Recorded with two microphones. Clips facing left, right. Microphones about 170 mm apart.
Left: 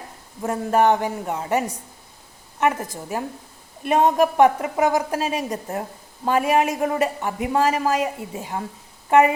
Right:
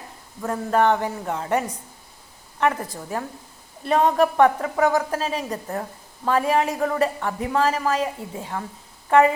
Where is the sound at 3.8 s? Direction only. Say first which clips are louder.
Left 1 dB; 25° left (ahead or behind).